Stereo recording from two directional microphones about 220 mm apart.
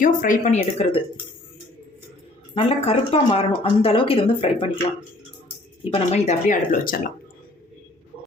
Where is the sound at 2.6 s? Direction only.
25° left (ahead or behind).